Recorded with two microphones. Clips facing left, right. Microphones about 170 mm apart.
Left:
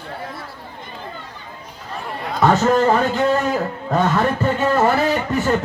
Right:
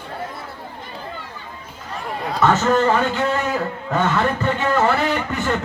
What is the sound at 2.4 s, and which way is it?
Speech, 35° left (ahead or behind).